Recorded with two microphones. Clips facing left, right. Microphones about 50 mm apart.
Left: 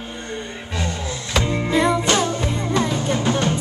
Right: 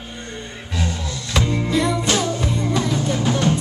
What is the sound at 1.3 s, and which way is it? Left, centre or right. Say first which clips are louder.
Music: even; centre.